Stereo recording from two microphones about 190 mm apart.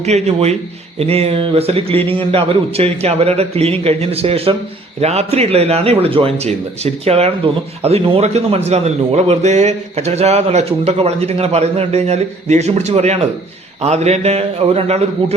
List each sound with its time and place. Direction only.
0.0 s a man's voice: 35° right (ahead or behind)